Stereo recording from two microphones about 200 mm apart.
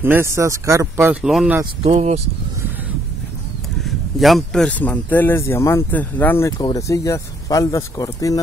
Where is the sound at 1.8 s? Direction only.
30° right (ahead or behind).